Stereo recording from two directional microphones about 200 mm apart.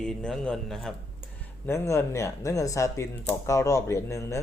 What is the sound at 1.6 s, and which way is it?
Speech, 15° left (ahead or behind).